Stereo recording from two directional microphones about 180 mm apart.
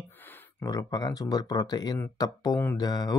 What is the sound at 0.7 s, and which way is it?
Speech, 20° left (ahead or behind).